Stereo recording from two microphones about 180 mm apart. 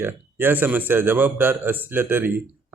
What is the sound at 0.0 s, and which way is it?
A man's voice, 10° right (ahead or behind).